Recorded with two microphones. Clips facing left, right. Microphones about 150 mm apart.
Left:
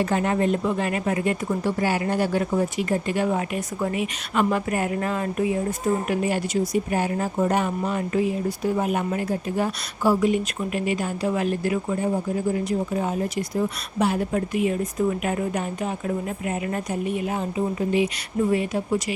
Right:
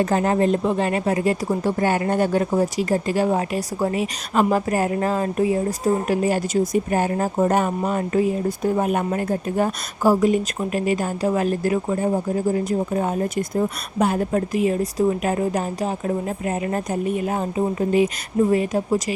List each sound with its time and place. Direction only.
0.0 s speech: 35° right (ahead or behind)
1.8 s speech: 50° right (ahead or behind)
2.4 s speech: 35° right (ahead or behind)